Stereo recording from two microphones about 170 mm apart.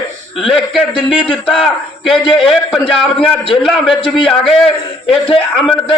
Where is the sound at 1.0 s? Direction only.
30° left (ahead or behind).